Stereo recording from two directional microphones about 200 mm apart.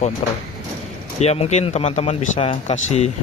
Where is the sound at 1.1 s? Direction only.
30° left (ahead or behind).